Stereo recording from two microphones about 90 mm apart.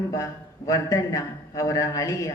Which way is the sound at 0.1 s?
40° left (ahead or behind).